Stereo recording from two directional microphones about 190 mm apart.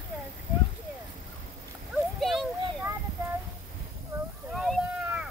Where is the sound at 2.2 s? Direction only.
Centre (ahead or behind).